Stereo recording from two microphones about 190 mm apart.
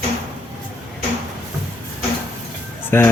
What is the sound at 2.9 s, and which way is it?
Speech, 10° left (ahead or behind).